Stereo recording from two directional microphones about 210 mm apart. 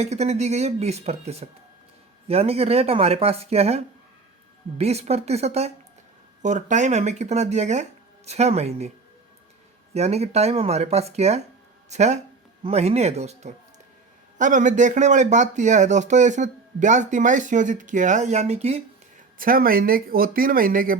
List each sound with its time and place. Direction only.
0.0 s speech: 30° right (ahead or behind)
9.9 s speech: 30° right (ahead or behind)
19.4 s speech: 40° right (ahead or behind)